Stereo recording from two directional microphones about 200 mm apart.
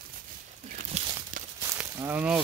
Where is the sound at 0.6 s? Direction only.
35° right (ahead or behind).